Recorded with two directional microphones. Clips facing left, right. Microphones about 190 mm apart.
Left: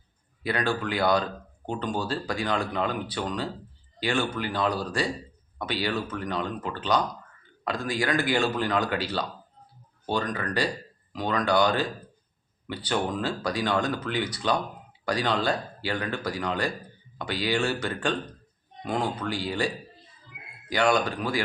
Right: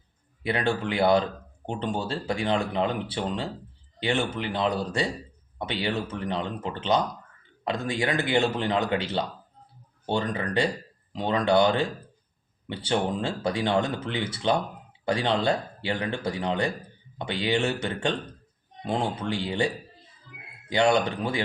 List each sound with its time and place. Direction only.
0.4 s speech: 25° right (ahead or behind)